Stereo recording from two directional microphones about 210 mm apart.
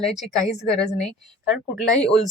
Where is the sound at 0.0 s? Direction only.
Centre (ahead or behind).